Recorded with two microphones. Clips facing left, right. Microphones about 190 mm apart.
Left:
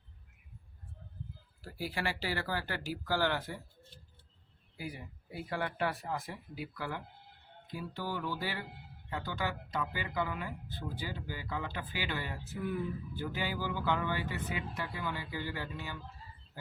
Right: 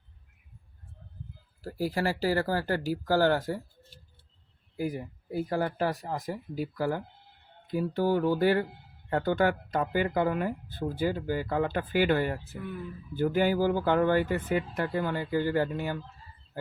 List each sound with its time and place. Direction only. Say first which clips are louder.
1.6 s speech: right 8 dB; 40° right (ahead or behind)
4.8 s speech: right 11 dB; 45° right (ahead or behind)